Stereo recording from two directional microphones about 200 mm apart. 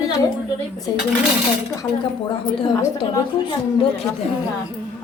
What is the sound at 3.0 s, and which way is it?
A woman's voice, 25° left (ahead or behind).